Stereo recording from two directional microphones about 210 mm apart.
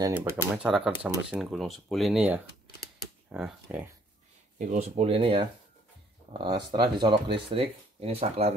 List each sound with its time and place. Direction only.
0.0 s speech: 10° right (ahead or behind)
3.0 s a sound: 5° right (ahead or behind)
4.6 s speech: 35° right (ahead or behind)